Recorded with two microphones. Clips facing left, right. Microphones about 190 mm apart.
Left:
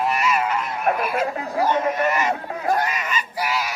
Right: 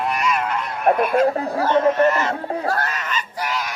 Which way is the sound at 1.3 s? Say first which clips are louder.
Right 5 dB; 35° right (ahead or behind).